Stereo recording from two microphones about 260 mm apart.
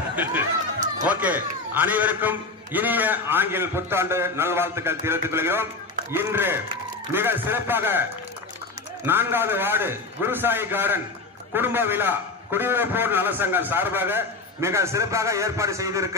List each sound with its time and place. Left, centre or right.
0.1 s chatter: centre
1.0 s a man's voice: centre